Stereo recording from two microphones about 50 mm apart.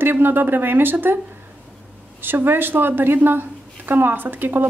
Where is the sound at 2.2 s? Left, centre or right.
Right.